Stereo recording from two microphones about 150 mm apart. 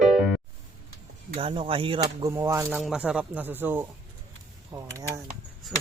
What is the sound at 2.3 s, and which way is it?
Speech, 20° right (ahead or behind).